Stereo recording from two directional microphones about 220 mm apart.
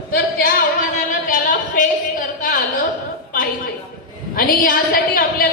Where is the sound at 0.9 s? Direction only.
35° left (ahead or behind).